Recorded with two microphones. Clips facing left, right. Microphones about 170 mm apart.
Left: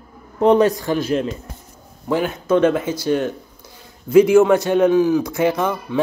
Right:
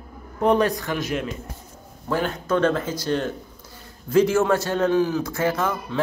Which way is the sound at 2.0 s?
10° left (ahead or behind).